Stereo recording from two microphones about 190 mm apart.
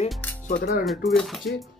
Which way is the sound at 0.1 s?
10° left (ahead or behind).